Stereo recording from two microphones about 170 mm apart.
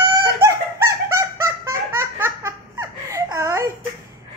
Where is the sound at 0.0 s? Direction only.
20° right (ahead or behind).